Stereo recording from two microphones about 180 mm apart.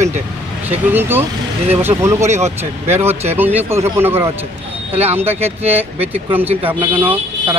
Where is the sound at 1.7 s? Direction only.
10° right (ahead or behind).